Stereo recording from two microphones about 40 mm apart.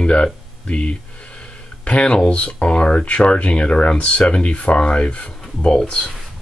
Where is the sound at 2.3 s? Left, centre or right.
Left.